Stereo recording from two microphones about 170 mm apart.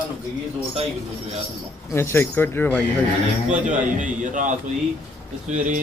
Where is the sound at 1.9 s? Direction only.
15° left (ahead or behind).